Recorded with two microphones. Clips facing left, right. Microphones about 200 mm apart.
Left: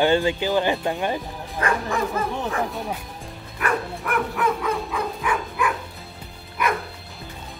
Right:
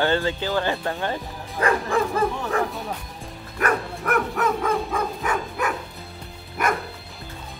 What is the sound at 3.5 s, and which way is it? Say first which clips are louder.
Dog: right 1 dB; 45° right (ahead or behind).